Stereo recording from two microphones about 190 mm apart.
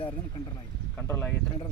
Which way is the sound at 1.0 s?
10° left (ahead or behind).